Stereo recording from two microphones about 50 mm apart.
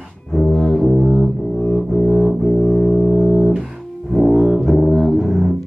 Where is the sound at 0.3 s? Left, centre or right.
Centre.